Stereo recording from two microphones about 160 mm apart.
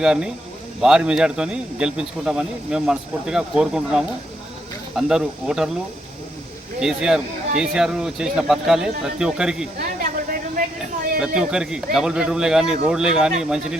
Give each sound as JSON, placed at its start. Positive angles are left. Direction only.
{"t": 0.0, "sound": "a man's voice", "side_deg": -5}
{"t": 6.7, "sound": "a man's voice", "side_deg": -5}
{"t": 9.7, "sound": "a sound", "side_deg": -60}
{"t": 11.3, "sound": "a man's voice", "side_deg": -5}